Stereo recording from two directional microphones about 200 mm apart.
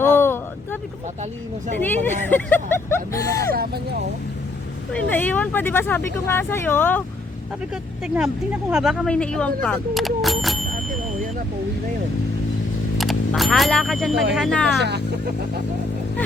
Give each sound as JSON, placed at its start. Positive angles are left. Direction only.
{"t": 0.0, "sound": "vehicle", "side_deg": 10}
{"t": 1.9, "sound": "speech", "side_deg": 10}
{"t": 3.5, "sound": "speech", "side_deg": -50}
{"t": 4.9, "sound": "speech", "side_deg": 10}
{"t": 7.7, "sound": "speech", "side_deg": -5}
{"t": 13.0, "sound": "speech", "side_deg": 0}
{"t": 14.8, "sound": "speech", "side_deg": -60}